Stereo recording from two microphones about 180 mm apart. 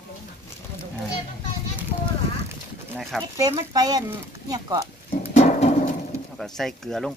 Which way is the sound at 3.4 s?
20° right (ahead or behind).